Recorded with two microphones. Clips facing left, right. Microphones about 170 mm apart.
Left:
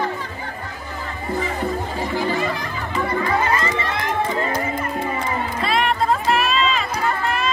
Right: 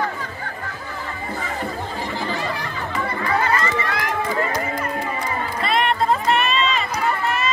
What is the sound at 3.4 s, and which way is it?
Crowd, 20° left (ahead or behind).